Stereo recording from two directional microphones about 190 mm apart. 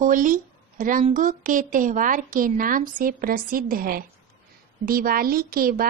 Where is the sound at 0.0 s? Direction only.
45° right (ahead or behind).